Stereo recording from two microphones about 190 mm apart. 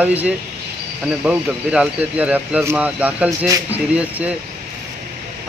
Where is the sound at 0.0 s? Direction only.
10° right (ahead or behind).